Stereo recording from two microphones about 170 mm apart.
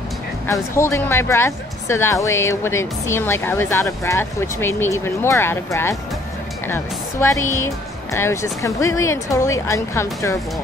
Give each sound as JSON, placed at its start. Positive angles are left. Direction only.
{"t": 0.5, "sound": "speech", "side_deg": 15}